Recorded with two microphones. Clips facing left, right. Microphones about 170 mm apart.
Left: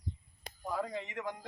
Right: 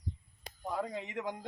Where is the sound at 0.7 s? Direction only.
5° right (ahead or behind).